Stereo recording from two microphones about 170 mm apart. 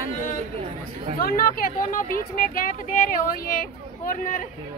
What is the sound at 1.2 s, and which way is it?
Speech, 60° left (ahead or behind).